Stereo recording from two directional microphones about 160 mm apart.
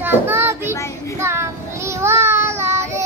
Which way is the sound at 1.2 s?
15° right (ahead or behind).